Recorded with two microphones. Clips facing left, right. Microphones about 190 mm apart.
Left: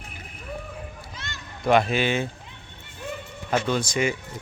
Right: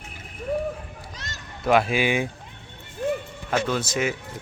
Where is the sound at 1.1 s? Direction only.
40° right (ahead or behind).